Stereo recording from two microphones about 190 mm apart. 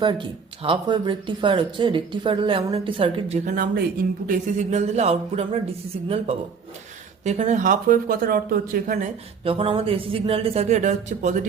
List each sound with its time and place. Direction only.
0.0 s speech: 25° right (ahead or behind)
3.4 s speech: 45° right (ahead or behind)
7.3 s speech: 35° right (ahead or behind)
9.4 s speech: 30° right (ahead or behind)